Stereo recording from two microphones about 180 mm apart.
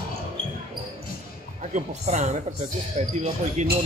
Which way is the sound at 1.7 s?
40° right (ahead or behind).